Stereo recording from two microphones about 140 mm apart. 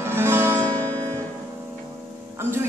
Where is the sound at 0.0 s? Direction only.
20° right (ahead or behind).